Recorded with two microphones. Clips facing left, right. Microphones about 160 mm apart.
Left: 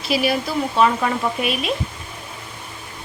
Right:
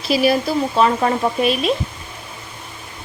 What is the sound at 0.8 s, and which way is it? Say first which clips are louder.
Speech: right 1 dB; 35° right (ahead or behind).